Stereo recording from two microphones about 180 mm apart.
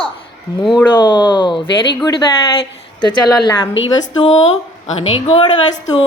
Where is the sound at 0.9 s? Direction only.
25° left (ahead or behind).